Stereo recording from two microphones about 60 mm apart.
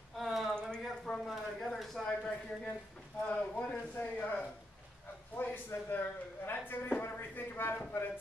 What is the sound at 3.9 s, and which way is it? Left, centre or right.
Speech, left.